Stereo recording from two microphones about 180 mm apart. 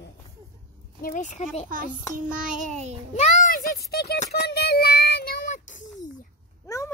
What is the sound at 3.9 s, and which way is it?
Speech, 60° left (ahead or behind).